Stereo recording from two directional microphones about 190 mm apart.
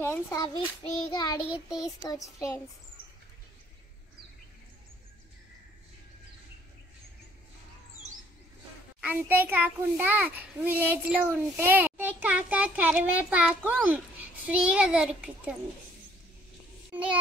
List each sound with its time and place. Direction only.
0.0 s a child's voice: 15° left (ahead or behind)
1.1 s child singing: 20° left (ahead or behind)
2.3 s a child's voice: 15° left (ahead or behind)
9.0 s a child's voice: 10° right (ahead or behind)
16.9 s a child's voice: 5° right (ahead or behind)